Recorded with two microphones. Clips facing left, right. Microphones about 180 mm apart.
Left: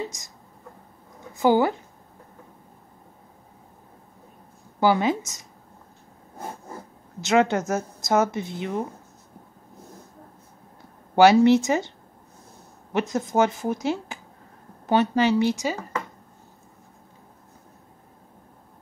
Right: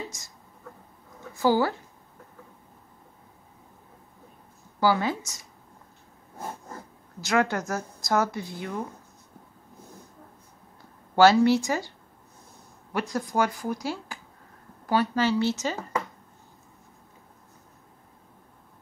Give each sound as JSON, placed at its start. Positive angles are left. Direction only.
{"t": 0.1, "sound": "speech", "side_deg": 20}
{"t": 1.3, "sound": "speech", "side_deg": 20}
{"t": 4.7, "sound": "speech", "side_deg": 20}
{"t": 7.2, "sound": "speech", "side_deg": 20}
{"t": 11.1, "sound": "speech", "side_deg": 20}
{"t": 12.9, "sound": "speech", "side_deg": 20}